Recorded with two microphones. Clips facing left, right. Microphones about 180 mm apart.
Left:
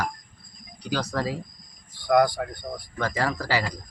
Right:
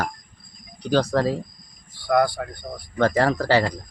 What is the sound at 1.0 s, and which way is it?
Speech, 55° right (ahead or behind).